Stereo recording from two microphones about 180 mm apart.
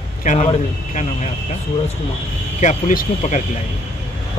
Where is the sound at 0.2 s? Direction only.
45° left (ahead or behind).